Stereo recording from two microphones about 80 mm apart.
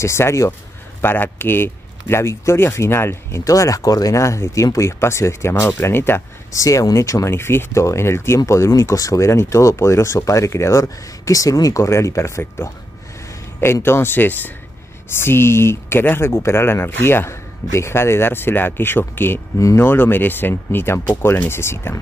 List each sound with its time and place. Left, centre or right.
0.0 s speech: left
6.5 s speech: left
13.8 s speech: left